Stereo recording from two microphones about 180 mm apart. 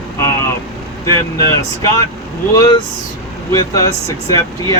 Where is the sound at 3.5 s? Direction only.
20° left (ahead or behind).